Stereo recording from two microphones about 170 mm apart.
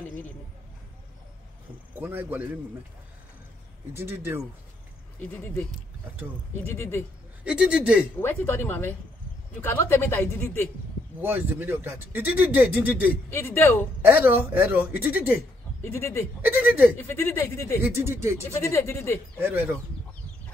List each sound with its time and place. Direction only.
2.0 s speech: 10° right (ahead or behind)
3.9 s speech: 15° right (ahead or behind)
5.3 s speech: 15° left (ahead or behind)
7.4 s a man's voice: 5° right (ahead or behind)
8.2 s speech: 15° left (ahead or behind)
11.1 s speech: 10° right (ahead or behind)
13.3 s speech: 15° left (ahead or behind)
14.0 s speech: 10° right (ahead or behind)
15.8 s speech: 15° left (ahead or behind)
16.3 s speech: 10° right (ahead or behind)
17.0 s speech: 15° left (ahead or behind)
17.8 s speech: 15° right (ahead or behind)
18.4 s speech: 15° left (ahead or behind)
19.3 s speech: 10° right (ahead or behind)